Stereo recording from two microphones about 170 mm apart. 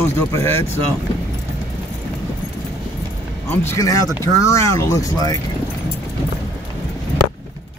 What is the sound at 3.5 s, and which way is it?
Speech, 15° left (ahead or behind).